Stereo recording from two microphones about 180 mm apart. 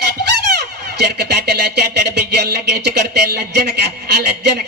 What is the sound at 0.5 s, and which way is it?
Speech, 65° right (ahead or behind).